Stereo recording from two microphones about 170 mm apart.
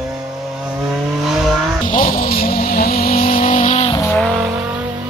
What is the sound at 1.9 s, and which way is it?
Vehicle, 55° left (ahead or behind).